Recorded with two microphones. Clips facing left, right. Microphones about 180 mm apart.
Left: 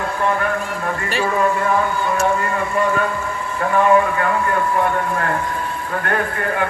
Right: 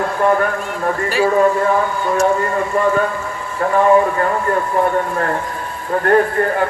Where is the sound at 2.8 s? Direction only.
35° right (ahead or behind).